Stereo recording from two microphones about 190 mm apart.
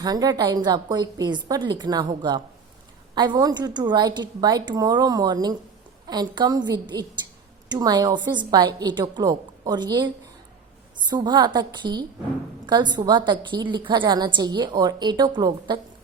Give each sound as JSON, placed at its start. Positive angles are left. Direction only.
{"t": 0.0, "sound": "a woman's voice", "side_deg": -20}
{"t": 11.1, "sound": "a woman's voice", "side_deg": -20}